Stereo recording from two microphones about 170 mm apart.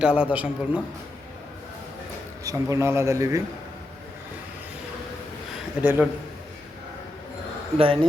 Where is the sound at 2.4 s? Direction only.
20° right (ahead or behind).